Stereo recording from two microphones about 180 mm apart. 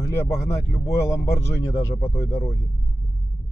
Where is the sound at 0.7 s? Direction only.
15° left (ahead or behind).